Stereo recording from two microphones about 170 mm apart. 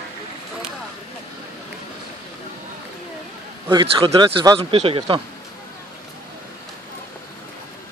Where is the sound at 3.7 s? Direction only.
30° right (ahead or behind).